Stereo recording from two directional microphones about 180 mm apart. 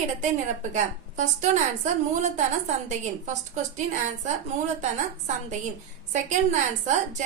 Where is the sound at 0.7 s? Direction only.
45° right (ahead or behind).